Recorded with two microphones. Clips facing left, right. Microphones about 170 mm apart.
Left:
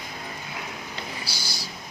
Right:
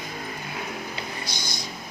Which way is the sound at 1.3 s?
30° left (ahead or behind).